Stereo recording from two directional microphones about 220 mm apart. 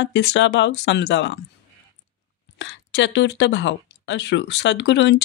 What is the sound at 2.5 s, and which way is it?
Speech, 55° left (ahead or behind).